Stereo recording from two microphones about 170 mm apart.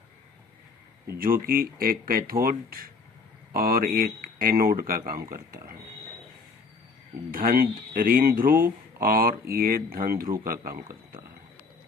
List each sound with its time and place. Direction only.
1.2 s speech: 60° right (ahead or behind)
7.3 s speech: 55° right (ahead or behind)